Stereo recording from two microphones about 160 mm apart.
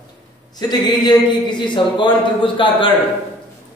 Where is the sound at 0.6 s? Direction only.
25° left (ahead or behind).